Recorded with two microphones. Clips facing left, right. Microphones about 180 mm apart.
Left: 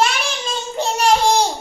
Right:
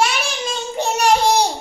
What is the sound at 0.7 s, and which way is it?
Child singing, 15° right (ahead or behind).